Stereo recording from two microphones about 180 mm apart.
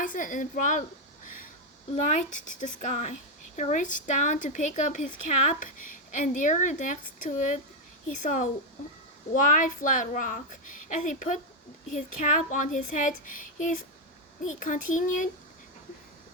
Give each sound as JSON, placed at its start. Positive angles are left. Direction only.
{"t": 0.0, "sound": "a woman's voice", "side_deg": 45}